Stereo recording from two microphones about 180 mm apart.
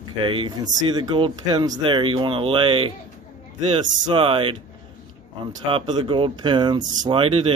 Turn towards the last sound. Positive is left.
turn(degrees=-30)  # may be behind; listen again after turning